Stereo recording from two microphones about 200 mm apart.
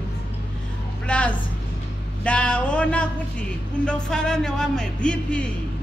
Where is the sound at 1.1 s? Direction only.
5° left (ahead or behind).